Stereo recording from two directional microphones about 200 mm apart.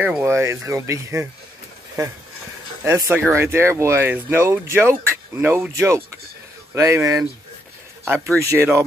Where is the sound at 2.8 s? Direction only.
10° right (ahead or behind).